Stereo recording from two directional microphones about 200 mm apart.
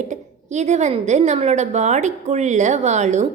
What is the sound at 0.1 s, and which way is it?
A woman's voice, 35° right (ahead or behind).